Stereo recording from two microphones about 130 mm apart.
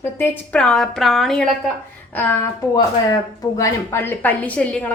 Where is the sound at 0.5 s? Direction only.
5° left (ahead or behind).